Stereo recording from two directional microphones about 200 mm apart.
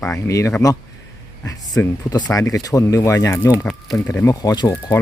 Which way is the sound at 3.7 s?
5° left (ahead or behind).